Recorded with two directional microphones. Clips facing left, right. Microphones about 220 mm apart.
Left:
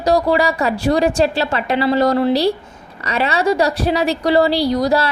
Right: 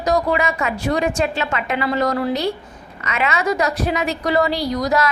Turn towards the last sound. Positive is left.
turn(degrees=30)  # may be behind; listen again after turning